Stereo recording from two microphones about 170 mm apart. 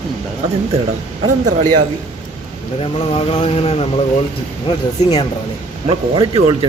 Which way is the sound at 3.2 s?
35° left (ahead or behind).